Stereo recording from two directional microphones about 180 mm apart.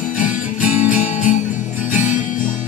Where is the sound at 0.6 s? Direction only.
10° right (ahead or behind).